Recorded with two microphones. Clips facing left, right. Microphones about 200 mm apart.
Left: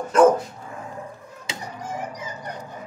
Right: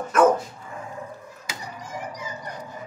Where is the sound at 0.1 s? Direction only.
30° left (ahead or behind).